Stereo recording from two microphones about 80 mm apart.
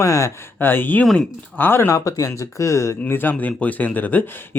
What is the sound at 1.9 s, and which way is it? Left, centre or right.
Speech, left.